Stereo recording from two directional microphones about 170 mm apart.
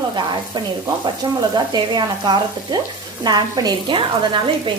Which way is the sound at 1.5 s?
25° right (ahead or behind).